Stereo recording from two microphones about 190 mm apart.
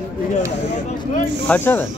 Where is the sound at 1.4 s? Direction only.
10° left (ahead or behind).